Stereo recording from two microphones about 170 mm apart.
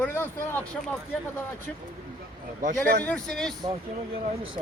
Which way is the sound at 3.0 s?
5° left (ahead or behind).